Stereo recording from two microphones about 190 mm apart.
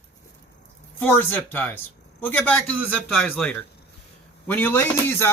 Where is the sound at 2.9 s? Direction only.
Centre (ahead or behind).